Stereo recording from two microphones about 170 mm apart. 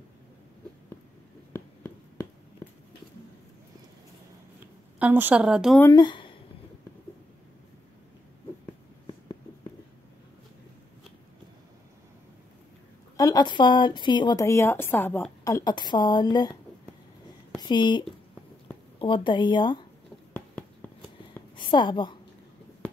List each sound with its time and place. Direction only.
4.9 s a woman's voice: 10° right (ahead or behind)
5.8 s speech: 20° left (ahead or behind)
13.1 s a woman's voice: 20° left (ahead or behind)
17.6 s a woman's voice: 25° left (ahead or behind)
21.5 s a woman's voice: 30° left (ahead or behind)